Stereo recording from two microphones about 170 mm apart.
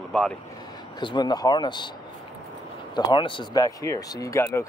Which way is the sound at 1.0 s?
25° left (ahead or behind).